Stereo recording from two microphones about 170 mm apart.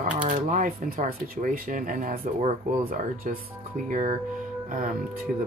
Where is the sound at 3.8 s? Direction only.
45° right (ahead or behind).